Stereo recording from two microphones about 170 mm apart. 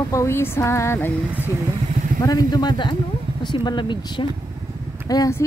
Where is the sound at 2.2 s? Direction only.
20° left (ahead or behind).